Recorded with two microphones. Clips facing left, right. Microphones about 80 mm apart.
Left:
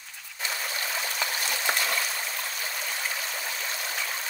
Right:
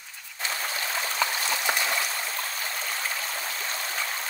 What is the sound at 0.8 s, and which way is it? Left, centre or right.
Stream, right.